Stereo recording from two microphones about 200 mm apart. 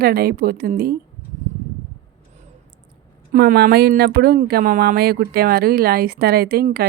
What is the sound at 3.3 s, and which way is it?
Speech, 50° right (ahead or behind).